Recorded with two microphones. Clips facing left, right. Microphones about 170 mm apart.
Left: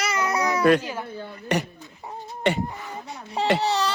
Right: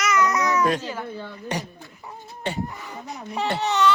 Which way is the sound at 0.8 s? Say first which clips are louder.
Right 1 dB; 10° left (ahead or behind).